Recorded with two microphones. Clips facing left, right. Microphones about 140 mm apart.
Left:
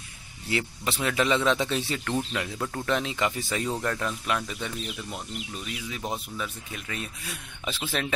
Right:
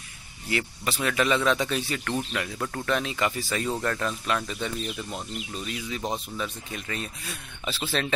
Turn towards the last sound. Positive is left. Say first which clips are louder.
# even
turn(degrees=15)  # may be behind; listen again after turning